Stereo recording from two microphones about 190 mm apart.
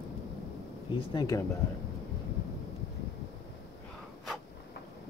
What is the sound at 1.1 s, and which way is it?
Speech, 20° left (ahead or behind).